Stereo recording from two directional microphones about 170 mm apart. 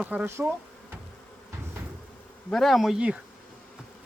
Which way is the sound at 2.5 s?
Centre (ahead or behind).